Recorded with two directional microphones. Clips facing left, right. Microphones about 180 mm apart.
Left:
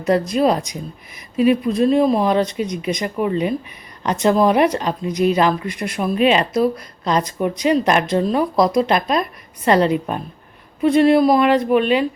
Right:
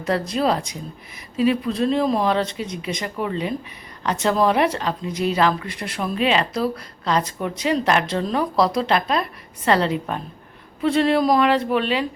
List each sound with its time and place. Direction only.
0.1 s speech: 15° left (ahead or behind)